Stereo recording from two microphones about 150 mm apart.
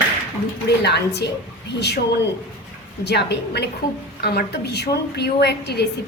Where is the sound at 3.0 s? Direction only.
90° left.